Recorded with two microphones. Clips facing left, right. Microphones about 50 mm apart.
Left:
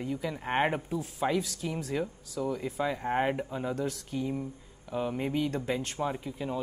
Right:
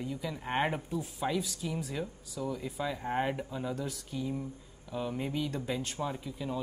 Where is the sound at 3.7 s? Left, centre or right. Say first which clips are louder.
Left 4 dB; left.